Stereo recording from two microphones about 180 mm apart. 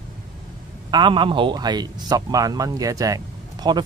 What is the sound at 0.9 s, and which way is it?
Speech, 25° right (ahead or behind).